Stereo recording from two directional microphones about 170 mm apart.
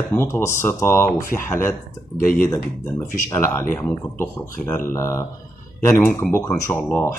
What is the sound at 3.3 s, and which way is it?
Speech, 15° left (ahead or behind).